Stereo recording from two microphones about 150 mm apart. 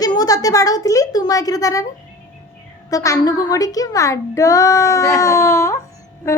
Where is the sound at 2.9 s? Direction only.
25° left (ahead or behind).